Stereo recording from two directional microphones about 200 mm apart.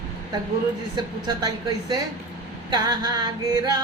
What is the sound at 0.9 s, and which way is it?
Music, 20° right (ahead or behind).